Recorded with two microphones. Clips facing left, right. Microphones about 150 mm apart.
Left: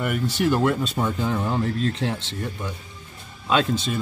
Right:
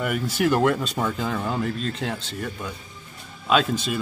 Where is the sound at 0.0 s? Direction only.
Centre (ahead or behind).